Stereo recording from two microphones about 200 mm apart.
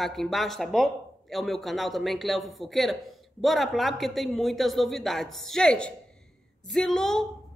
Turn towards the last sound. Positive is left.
turn(degrees=5)  # may be behind; listen again after turning